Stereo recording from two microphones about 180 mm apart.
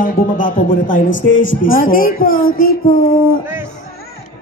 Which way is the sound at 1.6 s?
50° left (ahead or behind).